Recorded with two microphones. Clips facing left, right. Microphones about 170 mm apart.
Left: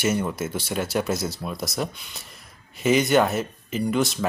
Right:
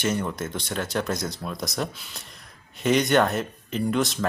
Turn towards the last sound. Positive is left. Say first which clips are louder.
# left 1 dB
turn(degrees=0)  # may be behind; listen again after turning